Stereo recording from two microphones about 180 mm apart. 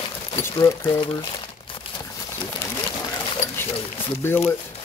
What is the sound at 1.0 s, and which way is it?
Speech, 30° left (ahead or behind).